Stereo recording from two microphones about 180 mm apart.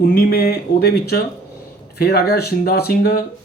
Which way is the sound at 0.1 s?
55° left (ahead or behind).